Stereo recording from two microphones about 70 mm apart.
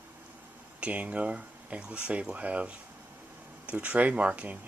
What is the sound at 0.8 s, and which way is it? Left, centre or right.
Speech, centre.